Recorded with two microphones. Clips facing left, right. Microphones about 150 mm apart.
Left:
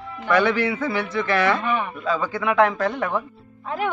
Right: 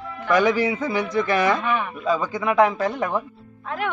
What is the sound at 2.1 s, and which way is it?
A man's voice, 15° right (ahead or behind).